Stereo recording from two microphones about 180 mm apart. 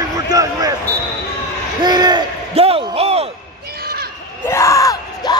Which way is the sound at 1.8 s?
25° right (ahead or behind).